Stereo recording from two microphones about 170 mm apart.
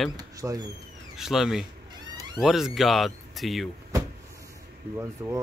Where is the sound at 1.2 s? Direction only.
Centre (ahead or behind).